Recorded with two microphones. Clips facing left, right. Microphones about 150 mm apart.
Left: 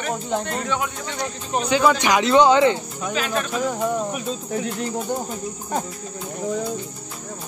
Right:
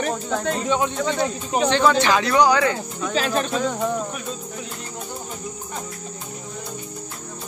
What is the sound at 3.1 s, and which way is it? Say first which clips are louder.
Speech: right 2 dB; 35° right (ahead or behind).